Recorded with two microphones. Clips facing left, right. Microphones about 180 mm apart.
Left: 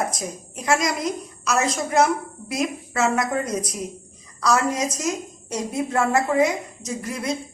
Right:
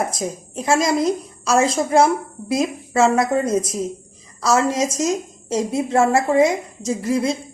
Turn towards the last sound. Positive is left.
turn(degrees=-30)  # may be behind; listen again after turning